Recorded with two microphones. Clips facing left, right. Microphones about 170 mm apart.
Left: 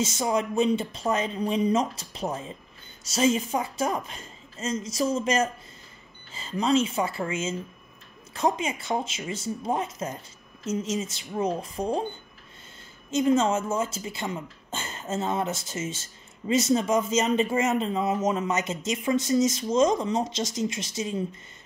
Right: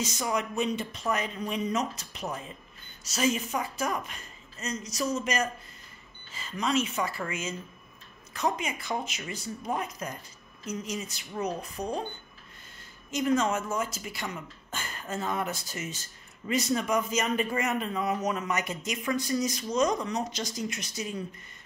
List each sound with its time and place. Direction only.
0.0 s a woman's voice: 25° left (ahead or behind)
13.1 s speech: 25° left (ahead or behind)